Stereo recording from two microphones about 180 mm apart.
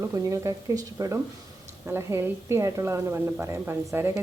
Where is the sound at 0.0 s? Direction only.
15° right (ahead or behind).